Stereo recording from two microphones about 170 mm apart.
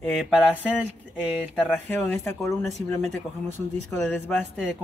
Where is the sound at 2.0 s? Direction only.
15° left (ahead or behind).